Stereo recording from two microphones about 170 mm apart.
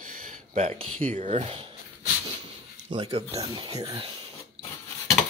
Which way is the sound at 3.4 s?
25° right (ahead or behind).